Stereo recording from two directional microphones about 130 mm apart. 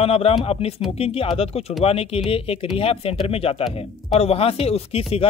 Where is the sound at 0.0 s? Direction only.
50° left (ahead or behind).